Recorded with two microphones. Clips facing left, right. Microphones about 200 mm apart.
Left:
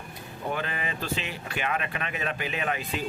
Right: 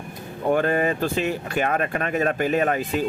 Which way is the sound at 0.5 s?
50° right (ahead or behind).